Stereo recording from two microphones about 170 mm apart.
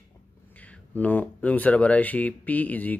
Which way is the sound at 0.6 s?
10° left (ahead or behind).